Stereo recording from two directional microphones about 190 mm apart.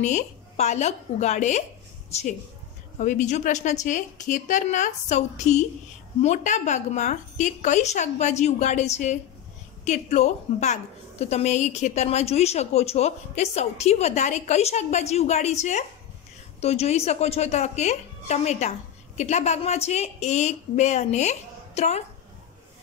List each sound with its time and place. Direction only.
0.0 s a woman's voice: 35° left (ahead or behind)
3.0 s a woman's voice: 40° left (ahead or behind)